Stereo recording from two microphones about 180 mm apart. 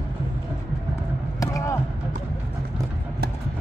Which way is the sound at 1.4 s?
20° left (ahead or behind).